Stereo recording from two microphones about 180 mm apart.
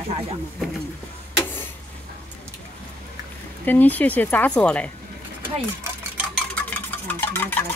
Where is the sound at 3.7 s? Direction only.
10° left (ahead or behind).